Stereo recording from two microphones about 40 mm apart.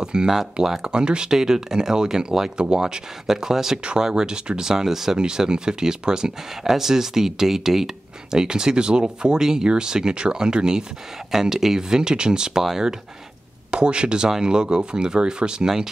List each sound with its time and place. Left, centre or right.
0.0 s speech: centre
3.8 s speech: right
13.7 s speech: right